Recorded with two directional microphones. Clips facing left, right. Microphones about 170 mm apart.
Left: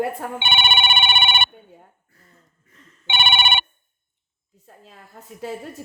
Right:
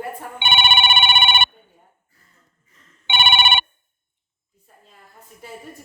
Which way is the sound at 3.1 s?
70° right (ahead or behind).